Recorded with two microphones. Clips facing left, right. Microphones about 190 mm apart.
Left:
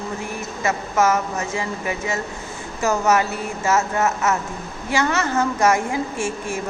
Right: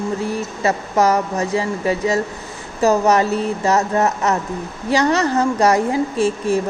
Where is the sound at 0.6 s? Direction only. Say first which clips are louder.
Right 2 dB; 35° right (ahead or behind).